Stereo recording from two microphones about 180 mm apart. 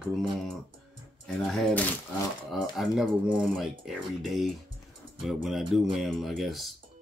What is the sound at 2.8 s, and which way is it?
Speech, centre (ahead or behind).